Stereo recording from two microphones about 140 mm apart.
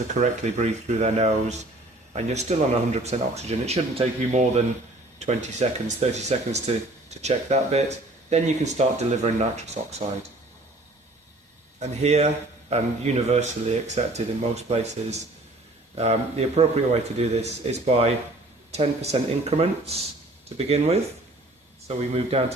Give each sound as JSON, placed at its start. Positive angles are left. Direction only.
{"t": 0.1, "sound": "speech", "side_deg": -60}
{"t": 11.8, "sound": "speech", "side_deg": -50}